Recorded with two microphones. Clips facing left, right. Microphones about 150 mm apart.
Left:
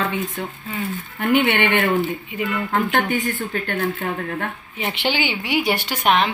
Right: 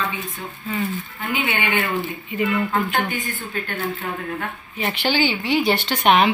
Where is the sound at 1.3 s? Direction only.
65° left (ahead or behind).